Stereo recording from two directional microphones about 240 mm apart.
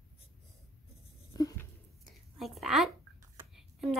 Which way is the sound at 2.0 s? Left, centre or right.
Centre.